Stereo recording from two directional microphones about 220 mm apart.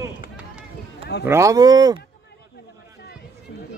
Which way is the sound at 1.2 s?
10° right (ahead or behind).